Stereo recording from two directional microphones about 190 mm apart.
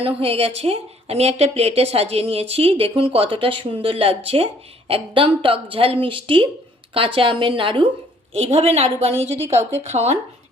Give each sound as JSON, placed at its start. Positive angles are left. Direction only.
{"t": 0.0, "sound": "a woman's voice", "side_deg": -30}